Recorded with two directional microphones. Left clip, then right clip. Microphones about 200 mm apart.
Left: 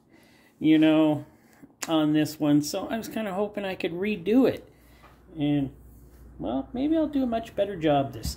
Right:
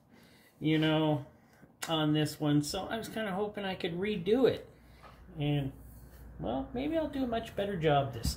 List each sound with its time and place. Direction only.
0.6 s speech: 50° left (ahead or behind)
6.4 s speech: 35° left (ahead or behind)